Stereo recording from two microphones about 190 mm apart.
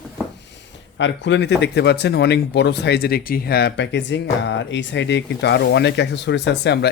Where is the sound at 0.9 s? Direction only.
70° left (ahead or behind).